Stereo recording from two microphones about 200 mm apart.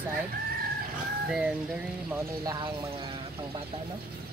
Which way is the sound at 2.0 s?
15° right (ahead or behind).